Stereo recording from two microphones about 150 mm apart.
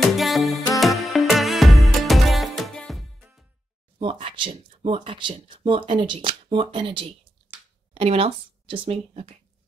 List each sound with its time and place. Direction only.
0.0 s music: centre (ahead or behind)
4.0 s speech: 35° right (ahead or behind)